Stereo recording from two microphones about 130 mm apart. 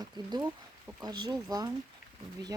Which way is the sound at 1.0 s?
30° right (ahead or behind).